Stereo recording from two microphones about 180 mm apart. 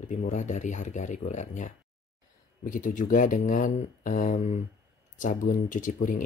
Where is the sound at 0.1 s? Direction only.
40° left (ahead or behind).